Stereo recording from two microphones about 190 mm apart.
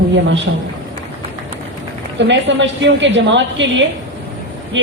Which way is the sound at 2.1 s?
70° right (ahead or behind).